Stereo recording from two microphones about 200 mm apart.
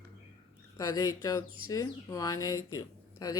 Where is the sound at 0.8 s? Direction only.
20° left (ahead or behind).